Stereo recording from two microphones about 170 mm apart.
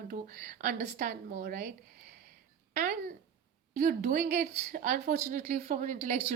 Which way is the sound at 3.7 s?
50° right (ahead or behind).